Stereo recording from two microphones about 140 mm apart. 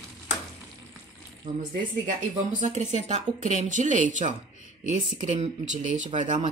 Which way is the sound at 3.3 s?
65° right (ahead or behind).